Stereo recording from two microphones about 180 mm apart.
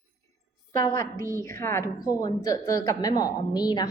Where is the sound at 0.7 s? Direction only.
15° left (ahead or behind).